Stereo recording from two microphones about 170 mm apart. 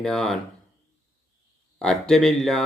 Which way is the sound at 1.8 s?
5° left (ahead or behind).